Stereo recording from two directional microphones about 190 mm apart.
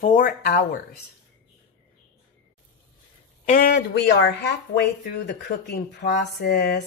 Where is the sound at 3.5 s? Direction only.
50° left (ahead or behind).